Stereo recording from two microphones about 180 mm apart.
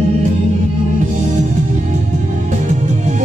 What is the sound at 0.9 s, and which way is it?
Music, 45° right (ahead or behind).